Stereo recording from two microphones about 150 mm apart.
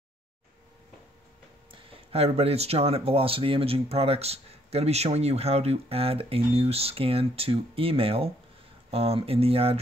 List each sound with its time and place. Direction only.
1.7 s speech: 40° right (ahead or behind)